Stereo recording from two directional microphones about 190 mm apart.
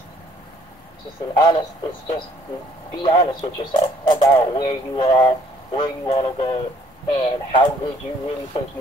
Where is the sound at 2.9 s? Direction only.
20° left (ahead or behind).